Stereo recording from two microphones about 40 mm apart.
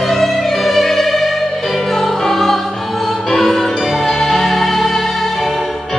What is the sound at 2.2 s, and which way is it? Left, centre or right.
Music, centre.